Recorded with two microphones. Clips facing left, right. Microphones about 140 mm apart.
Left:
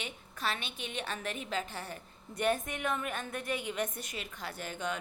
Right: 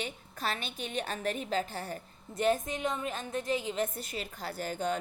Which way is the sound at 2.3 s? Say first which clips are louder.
Right 3 dB; 25° right (ahead or behind).